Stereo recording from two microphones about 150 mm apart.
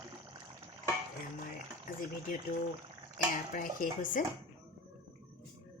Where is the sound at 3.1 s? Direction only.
65° left (ahead or behind).